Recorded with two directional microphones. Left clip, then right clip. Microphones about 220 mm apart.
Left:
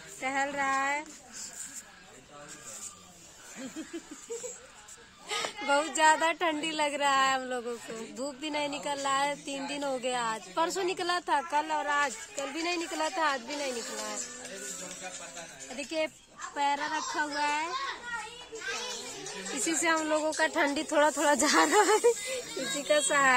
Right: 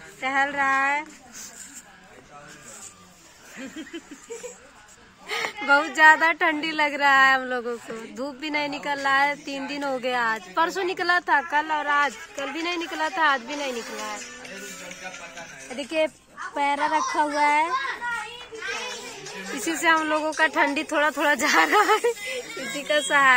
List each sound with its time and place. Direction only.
0.2 s speech: 10° left (ahead or behind)
5.3 s a woman's voice: centre (ahead or behind); by 14.0 s 15° left (ahead or behind)
14.1 s music: 20° left (ahead or behind)
15.7 s speech: 30° right (ahead or behind)
18.5 s children playing: 20° left (ahead or behind)
18.9 s music: 35° left (ahead or behind)
19.6 s speech: 5° left (ahead or behind)
22.1 s speech: 40° left (ahead or behind)
22.8 s speech: 15° left (ahead or behind)